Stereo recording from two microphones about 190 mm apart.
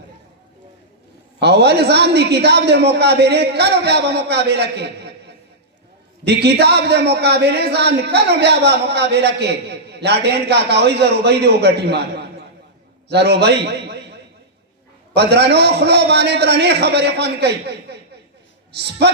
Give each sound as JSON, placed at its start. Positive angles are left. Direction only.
{"t": 1.4, "sound": "a man's voice", "side_deg": -60}
{"t": 6.2, "sound": "a man's voice", "side_deg": -60}
{"t": 15.1, "sound": "a man's voice", "side_deg": -60}